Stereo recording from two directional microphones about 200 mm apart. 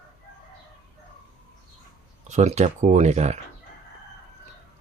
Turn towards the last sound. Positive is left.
turn(degrees=-35)  # may be behind; listen again after turning